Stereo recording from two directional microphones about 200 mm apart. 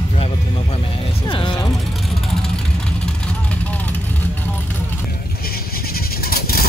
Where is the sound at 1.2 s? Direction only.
25° left (ahead or behind).